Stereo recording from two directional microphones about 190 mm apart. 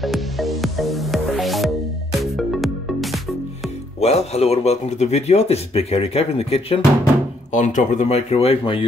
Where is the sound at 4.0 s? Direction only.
35° left (ahead or behind).